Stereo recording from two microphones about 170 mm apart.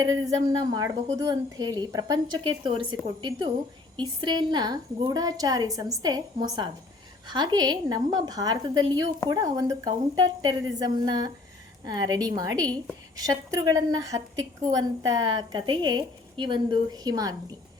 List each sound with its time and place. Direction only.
0.0 s a woman's voice: 20° right (ahead or behind)